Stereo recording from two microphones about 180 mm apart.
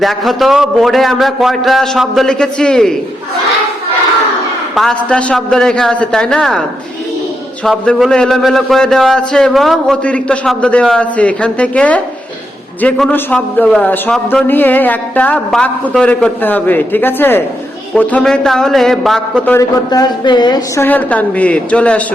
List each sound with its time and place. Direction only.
0.0 s a man's voice: centre (ahead or behind)
4.7 s a man's voice: centre (ahead or behind)
19.5 s a woman's voice: 20° left (ahead or behind)
20.8 s a man's voice: 10° left (ahead or behind)